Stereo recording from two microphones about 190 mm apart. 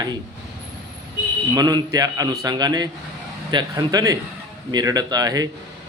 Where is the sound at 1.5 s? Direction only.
20° right (ahead or behind).